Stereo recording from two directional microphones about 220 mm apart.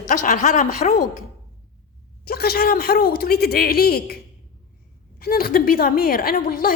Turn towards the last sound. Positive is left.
turn(degrees=40)  # may be behind; listen again after turning